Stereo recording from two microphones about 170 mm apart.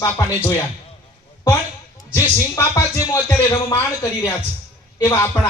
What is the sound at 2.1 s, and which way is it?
Music, 15° left (ahead or behind).